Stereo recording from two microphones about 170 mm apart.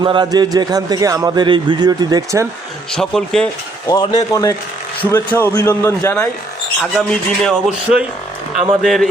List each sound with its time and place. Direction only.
0.0 s a man's voice: 25° right (ahead or behind)
2.9 s speech: 5° left (ahead or behind)
3.8 s a man's voice: 20° left (ahead or behind)
6.9 s speech: centre (ahead or behind)